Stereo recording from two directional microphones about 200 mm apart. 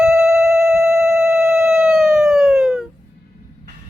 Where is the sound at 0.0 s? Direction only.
Centre (ahead or behind).